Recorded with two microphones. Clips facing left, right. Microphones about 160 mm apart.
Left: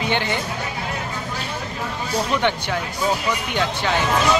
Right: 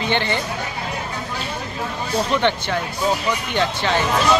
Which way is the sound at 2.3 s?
10° left (ahead or behind).